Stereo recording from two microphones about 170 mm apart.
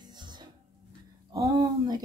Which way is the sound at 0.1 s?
25° right (ahead or behind).